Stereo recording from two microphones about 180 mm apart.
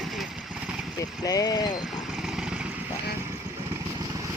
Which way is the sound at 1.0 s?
20° left (ahead or behind).